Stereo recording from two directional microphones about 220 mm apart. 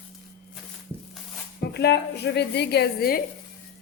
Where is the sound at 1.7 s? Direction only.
50° left (ahead or behind).